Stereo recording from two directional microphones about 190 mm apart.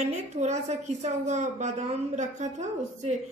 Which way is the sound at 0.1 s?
35° right (ahead or behind).